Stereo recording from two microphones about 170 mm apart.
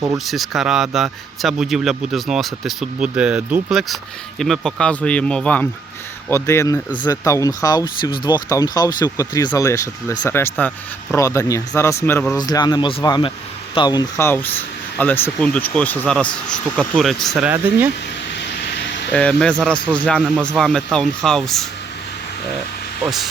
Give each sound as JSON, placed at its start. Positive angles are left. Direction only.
{"t": 0.3, "sound": "speech", "side_deg": 0}
{"t": 12.4, "sound": "speech", "side_deg": 25}
{"t": 19.1, "sound": "speech", "side_deg": 5}
{"t": 23.0, "sound": "speech", "side_deg": 0}